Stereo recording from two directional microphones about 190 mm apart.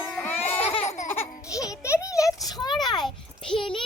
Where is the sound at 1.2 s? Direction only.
15° left (ahead or behind).